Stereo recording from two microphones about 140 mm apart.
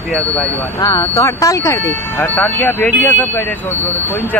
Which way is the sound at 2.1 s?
10° left (ahead or behind).